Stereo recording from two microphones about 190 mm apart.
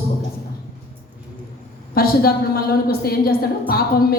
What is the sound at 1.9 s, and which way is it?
A woman's voice, 50° left (ahead or behind).